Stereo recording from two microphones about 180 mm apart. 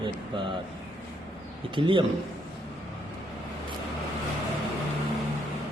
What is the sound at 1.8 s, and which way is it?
Speech, 30° right (ahead or behind).